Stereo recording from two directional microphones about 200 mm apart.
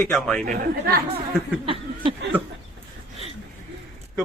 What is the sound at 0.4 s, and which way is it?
Speech, 40° right (ahead or behind).